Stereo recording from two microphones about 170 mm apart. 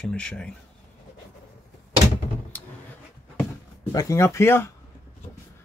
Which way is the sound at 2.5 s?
10° left (ahead or behind).